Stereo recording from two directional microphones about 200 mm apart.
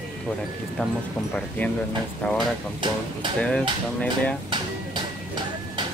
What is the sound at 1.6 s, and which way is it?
Speech, 10° left (ahead or behind).